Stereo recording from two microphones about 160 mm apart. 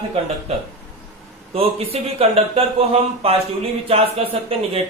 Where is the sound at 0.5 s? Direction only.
40° right (ahead or behind).